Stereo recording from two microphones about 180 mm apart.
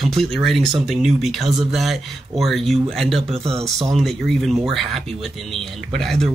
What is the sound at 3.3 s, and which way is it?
Speech, 35° right (ahead or behind).